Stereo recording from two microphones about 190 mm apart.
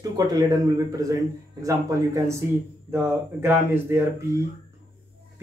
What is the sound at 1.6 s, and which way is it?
Speech, 15° right (ahead or behind).